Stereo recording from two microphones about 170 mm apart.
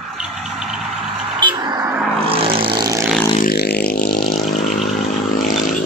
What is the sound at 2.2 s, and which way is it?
Vehicle, 30° right (ahead or behind).